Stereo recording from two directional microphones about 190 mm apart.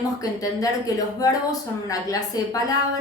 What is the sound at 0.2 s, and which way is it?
Speech, 20° left (ahead or behind).